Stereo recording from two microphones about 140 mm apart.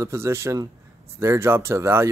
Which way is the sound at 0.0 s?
20° right (ahead or behind).